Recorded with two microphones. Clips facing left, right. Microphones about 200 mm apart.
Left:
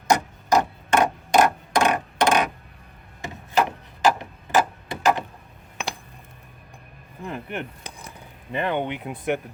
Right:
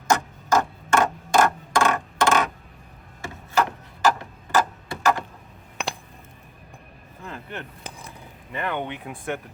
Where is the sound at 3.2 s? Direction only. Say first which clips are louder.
Left 1 dB; 15° left (ahead or behind).